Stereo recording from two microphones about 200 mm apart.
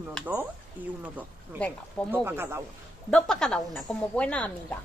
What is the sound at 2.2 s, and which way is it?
Speech, 10° right (ahead or behind).